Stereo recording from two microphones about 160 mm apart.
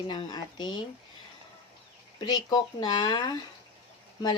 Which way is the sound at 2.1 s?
25° left (ahead or behind).